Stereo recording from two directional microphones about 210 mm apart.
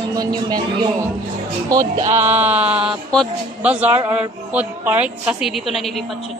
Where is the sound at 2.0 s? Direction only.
35° right (ahead or behind).